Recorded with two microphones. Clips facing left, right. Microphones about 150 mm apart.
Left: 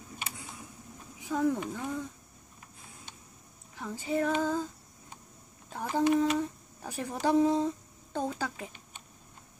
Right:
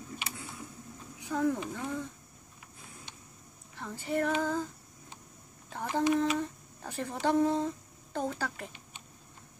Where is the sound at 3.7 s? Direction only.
15° left (ahead or behind).